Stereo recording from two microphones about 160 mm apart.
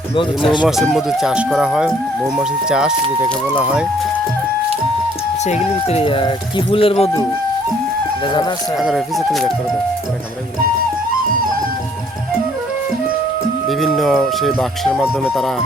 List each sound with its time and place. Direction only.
0.4 s speech: 5° right (ahead or behind)
5.5 s speech: 45° left (ahead or behind)
8.8 s speech: centre (ahead or behind)
13.7 s speech: centre (ahead or behind)